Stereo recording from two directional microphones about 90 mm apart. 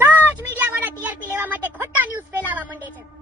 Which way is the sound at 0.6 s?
20° right (ahead or behind).